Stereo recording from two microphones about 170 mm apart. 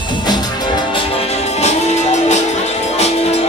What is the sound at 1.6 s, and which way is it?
Music, 40° left (ahead or behind).